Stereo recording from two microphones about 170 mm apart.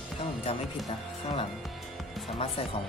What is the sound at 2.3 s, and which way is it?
Speech, 35° left (ahead or behind).